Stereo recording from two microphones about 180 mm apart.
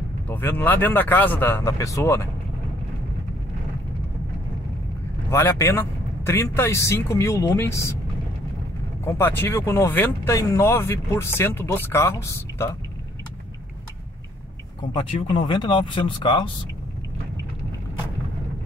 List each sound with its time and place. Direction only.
0.3 s speech: 10° left (ahead or behind)
5.3 s speech: 15° left (ahead or behind)
9.0 s speech: 10° left (ahead or behind)
14.8 s speech: 25° left (ahead or behind)